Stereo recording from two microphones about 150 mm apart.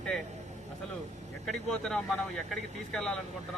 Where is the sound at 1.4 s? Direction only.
5° left (ahead or behind).